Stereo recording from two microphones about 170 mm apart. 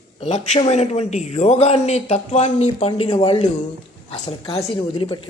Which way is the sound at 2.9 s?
25° left (ahead or behind).